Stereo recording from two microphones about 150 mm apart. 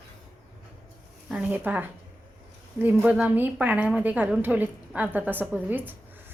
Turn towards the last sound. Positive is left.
turn(degrees=-10)  # may be behind; listen again after turning